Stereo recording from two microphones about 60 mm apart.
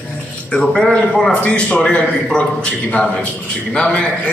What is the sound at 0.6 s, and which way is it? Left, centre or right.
A man's voice, centre.